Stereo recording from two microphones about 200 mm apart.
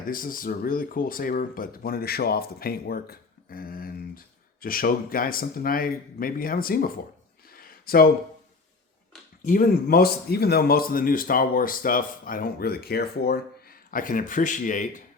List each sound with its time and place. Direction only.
0.1 s speech: 45° left (ahead or behind)
7.5 s a sound: 45° left (ahead or behind)
9.5 s speech: 45° left (ahead or behind)